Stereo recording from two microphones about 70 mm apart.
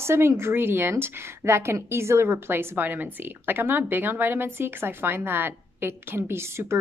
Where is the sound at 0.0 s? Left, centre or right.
Right.